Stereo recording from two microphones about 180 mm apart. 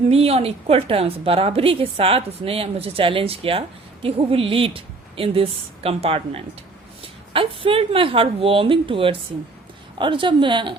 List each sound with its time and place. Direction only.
0.1 s a woman's voice: 35° right (ahead or behind)